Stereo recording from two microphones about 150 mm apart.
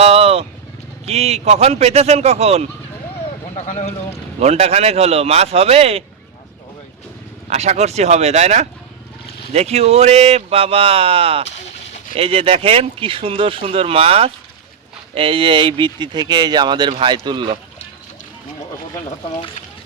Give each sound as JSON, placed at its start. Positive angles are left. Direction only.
{"t": 0.0, "sound": "vehicle", "side_deg": -45}
{"t": 1.0, "sound": "a man's voice", "side_deg": -45}
{"t": 3.5, "sound": "speech", "side_deg": 50}
{"t": 4.4, "sound": "a man's voice", "side_deg": -45}
{"t": 7.5, "sound": "a man's voice", "side_deg": -45}